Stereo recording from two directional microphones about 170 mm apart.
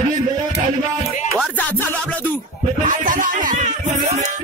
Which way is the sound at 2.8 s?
50° right (ahead or behind).